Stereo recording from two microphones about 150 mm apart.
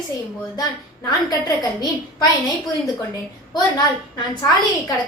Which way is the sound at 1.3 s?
25° left (ahead or behind).